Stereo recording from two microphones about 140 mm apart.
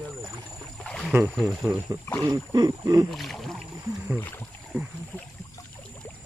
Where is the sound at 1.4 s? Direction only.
Centre (ahead or behind).